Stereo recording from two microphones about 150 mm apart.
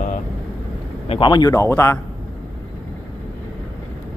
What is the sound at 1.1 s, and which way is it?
Speech, 30° left (ahead or behind).